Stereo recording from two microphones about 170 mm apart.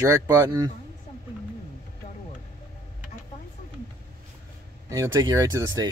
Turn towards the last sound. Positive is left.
turn(degrees=-20)  # may be behind; listen again after turning